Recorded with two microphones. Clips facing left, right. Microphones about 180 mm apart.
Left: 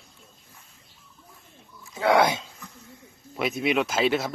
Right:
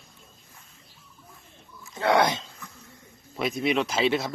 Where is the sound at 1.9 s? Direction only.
5° left (ahead or behind).